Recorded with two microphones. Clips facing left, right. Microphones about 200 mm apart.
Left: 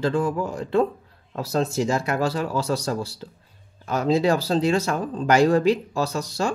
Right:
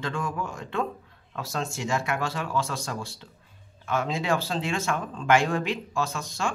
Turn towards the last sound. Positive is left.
turn(degrees=40)  # may be behind; listen again after turning